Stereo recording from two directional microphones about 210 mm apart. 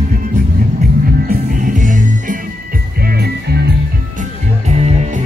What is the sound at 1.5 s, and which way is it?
Music, 35° right (ahead or behind).